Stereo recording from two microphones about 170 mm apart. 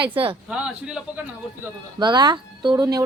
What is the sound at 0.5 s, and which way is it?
Speech, 5° right (ahead or behind).